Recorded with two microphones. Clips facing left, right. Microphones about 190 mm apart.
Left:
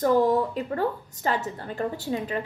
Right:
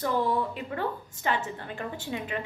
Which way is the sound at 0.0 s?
45° left (ahead or behind).